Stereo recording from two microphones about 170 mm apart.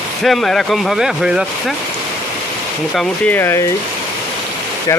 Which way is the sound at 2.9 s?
10° left (ahead or behind).